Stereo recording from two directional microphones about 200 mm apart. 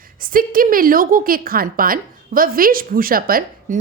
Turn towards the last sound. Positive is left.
turn(degrees=-45)  # may be behind; listen again after turning